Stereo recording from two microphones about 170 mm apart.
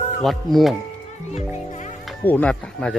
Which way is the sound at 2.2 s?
10° left (ahead or behind).